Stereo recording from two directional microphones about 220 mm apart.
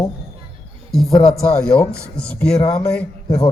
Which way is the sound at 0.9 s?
Centre (ahead or behind).